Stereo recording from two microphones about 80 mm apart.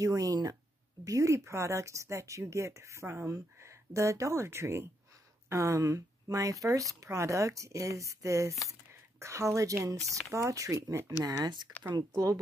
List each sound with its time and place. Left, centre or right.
0.0 s speech: right
11.2 s speech: right
12.1 s speech: right